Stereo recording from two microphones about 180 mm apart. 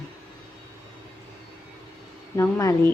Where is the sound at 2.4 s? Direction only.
15° left (ahead or behind).